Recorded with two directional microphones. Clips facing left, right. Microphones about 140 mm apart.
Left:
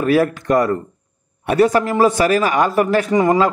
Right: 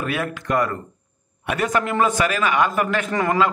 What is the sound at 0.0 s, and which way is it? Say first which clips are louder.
A man's voice: left 10 dB; 35° left (ahead or behind).